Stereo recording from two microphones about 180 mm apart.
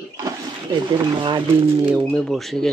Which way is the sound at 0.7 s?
25° right (ahead or behind).